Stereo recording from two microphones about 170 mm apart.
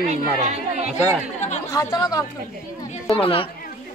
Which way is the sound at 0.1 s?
40° right (ahead or behind).